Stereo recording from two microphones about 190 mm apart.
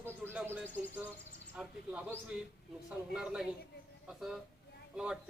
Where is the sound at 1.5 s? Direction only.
10° right (ahead or behind).